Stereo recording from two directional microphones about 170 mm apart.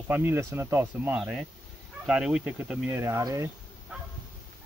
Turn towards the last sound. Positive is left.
turn(degrees=-15)  # may be behind; listen again after turning